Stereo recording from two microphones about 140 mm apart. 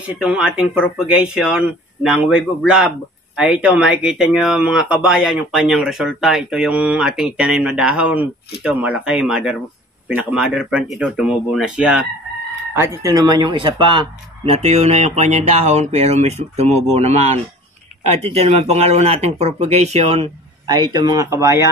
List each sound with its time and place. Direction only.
0.1 s speech: 5° right (ahead or behind)
12.7 s speech: 20° right (ahead or behind); by 20.2 s 50° right (ahead or behind)
20.6 s speech: 30° right (ahead or behind)